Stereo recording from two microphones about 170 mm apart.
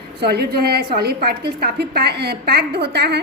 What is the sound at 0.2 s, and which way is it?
A woman's voice, 70° right (ahead or behind).